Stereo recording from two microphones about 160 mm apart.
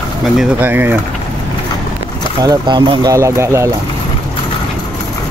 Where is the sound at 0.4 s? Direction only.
10° right (ahead or behind).